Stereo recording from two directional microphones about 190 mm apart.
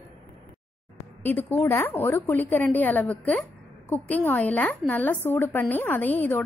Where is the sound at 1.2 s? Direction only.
10° left (ahead or behind).